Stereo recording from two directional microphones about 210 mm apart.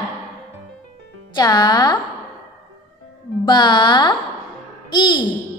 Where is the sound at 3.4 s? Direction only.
20° left (ahead or behind).